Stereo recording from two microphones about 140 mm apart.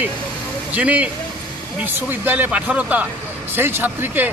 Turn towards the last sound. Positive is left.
turn(degrees=-15)  # may be behind; listen again after turning